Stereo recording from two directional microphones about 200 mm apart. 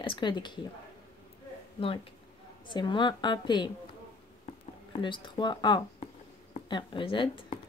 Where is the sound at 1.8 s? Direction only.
25° left (ahead or behind).